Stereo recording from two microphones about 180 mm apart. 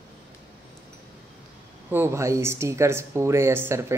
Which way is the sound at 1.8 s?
15° right (ahead or behind).